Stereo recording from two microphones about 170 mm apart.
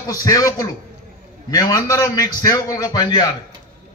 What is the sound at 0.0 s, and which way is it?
A man's voice, 20° left (ahead or behind).